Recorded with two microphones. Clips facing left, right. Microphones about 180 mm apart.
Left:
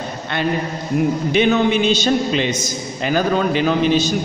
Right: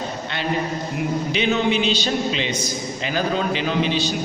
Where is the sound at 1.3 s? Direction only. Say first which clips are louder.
Left 5 dB; 50° left (ahead or behind).